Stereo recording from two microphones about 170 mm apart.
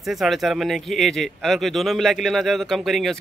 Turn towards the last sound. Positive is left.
turn(degrees=0)  # may be behind; listen again after turning